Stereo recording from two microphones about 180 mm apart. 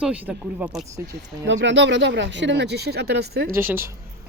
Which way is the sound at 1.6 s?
80° right.